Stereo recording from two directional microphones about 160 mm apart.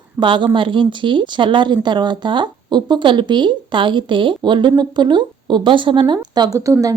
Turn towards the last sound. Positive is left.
turn(degrees=-20)  # may be behind; listen again after turning